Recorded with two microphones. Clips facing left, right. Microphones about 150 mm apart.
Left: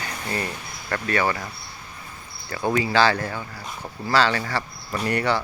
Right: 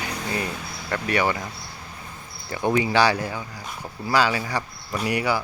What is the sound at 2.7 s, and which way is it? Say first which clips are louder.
Speech: even; 15° right (ahead or behind).